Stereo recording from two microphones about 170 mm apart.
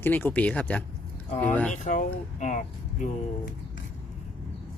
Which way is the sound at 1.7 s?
45° left (ahead or behind).